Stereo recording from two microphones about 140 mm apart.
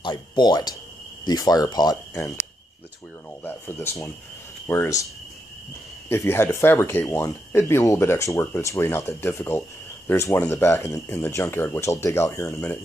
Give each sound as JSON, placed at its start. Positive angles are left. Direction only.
{"t": 0.0, "sound": "speech", "side_deg": 30}
{"t": 2.1, "sound": "speech", "side_deg": 15}
{"t": 3.4, "sound": "speech", "side_deg": 15}
{"t": 6.0, "sound": "speech", "side_deg": 15}